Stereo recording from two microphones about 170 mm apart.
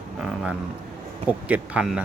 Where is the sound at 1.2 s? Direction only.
10° right (ahead or behind).